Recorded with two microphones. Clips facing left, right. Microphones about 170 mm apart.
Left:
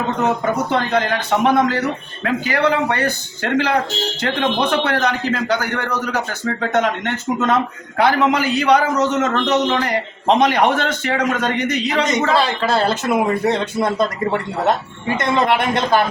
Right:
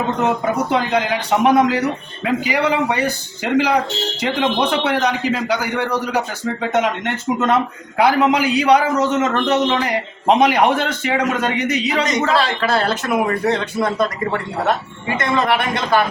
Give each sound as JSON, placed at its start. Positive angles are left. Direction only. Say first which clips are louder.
{"t": 0.2, "sound": "a man's voice", "louder": "left 1 dB", "side_deg": -5}
{"t": 12.9, "sound": "speech", "louder": "left 1 dB", "side_deg": 20}